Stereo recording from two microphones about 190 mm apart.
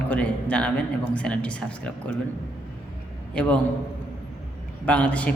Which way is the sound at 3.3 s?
5° left (ahead or behind).